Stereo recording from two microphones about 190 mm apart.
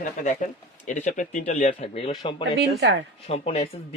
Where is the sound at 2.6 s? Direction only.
65° right (ahead or behind).